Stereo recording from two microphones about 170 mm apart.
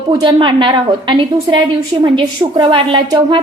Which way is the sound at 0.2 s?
25° right (ahead or behind).